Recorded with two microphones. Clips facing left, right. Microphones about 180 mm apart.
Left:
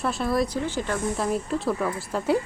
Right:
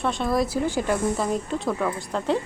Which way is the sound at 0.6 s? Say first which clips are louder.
Right 4 dB; 10° right (ahead or behind).